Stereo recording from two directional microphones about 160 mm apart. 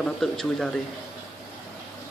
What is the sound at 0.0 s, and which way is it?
Speech, 5° left (ahead or behind).